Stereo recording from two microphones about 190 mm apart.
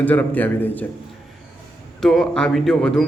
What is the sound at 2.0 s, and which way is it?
A man's voice, centre (ahead or behind).